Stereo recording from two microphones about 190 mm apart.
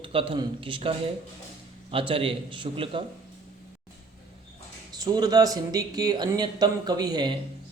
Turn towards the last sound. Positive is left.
turn(degrees=-20)  # may be behind; listen again after turning